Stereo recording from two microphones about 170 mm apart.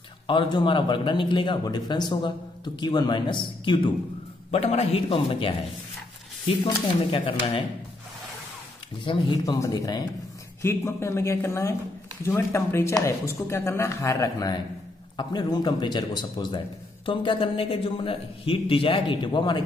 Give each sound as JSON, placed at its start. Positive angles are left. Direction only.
{"t": 0.3, "sound": "a man's voice", "side_deg": 30}
{"t": 6.6, "sound": "a man's voice", "side_deg": 30}
{"t": 9.0, "sound": "a man's voice", "side_deg": 25}